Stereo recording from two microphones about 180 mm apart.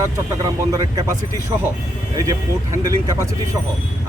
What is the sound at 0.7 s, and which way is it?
Speech, 20° right (ahead or behind).